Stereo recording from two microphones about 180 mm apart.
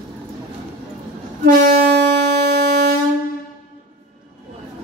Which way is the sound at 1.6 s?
55° right (ahead or behind).